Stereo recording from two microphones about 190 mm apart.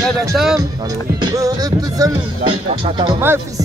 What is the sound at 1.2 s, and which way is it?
Music, 20° right (ahead or behind).